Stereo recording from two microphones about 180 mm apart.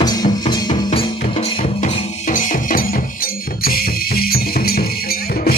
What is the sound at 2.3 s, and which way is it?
Music, 50° left (ahead or behind).